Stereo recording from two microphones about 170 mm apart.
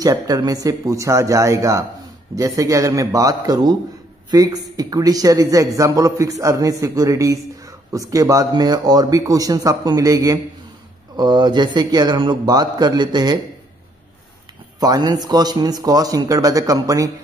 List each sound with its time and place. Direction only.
0.0 s a man's voice: 25° right (ahead or behind)
14.8 s a man's voice: 25° right (ahead or behind)